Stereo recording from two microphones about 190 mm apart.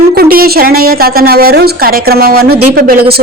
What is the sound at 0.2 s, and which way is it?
A woman's voice, 55° right (ahead or behind).